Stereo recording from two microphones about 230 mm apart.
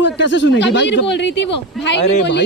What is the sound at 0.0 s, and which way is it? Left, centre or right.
Speech, left.